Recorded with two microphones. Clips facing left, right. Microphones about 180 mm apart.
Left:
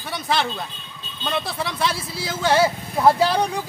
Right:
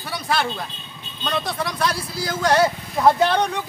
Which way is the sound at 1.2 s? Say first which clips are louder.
Right 1 dB; 5° left (ahead or behind).